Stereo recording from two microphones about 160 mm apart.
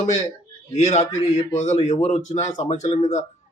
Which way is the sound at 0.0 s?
45° left (ahead or behind).